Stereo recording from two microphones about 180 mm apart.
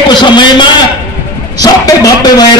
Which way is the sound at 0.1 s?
25° left (ahead or behind).